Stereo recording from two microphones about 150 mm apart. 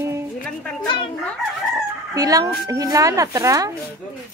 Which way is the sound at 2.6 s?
20° right (ahead or behind).